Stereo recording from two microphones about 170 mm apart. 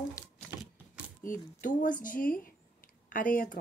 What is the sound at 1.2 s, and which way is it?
Speech, 50° left (ahead or behind).